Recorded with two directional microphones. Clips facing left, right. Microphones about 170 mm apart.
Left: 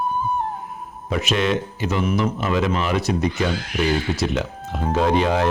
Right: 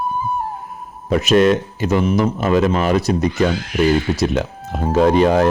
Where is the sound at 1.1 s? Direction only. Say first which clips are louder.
Right 8 dB; 45° right (ahead or behind).